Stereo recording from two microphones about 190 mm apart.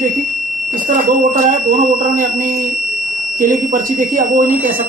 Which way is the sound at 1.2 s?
45° right (ahead or behind).